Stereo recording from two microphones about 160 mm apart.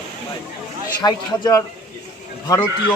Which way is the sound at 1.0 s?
25° left (ahead or behind).